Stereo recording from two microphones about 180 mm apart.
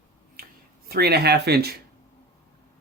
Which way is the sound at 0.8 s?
60° right (ahead or behind).